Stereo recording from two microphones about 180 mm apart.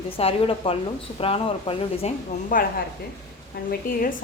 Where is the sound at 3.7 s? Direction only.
50° left (ahead or behind).